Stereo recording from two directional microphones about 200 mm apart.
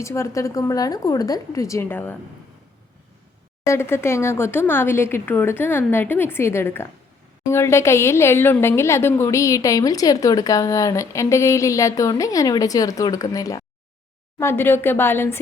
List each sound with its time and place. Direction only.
0.0 s a woman's voice: 15° left (ahead or behind)
3.7 s a woman's voice: 15° left (ahead or behind)